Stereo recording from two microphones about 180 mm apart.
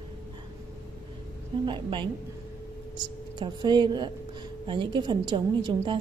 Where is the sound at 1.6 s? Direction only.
25° right (ahead or behind).